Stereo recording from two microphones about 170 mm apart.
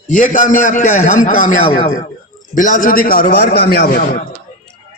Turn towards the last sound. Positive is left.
turn(degrees=55)  # may be behind; listen again after turning